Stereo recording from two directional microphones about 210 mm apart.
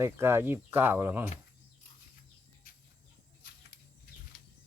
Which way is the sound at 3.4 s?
50° left (ahead or behind).